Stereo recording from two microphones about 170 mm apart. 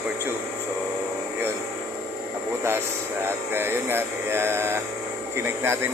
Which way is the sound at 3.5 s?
15° right (ahead or behind).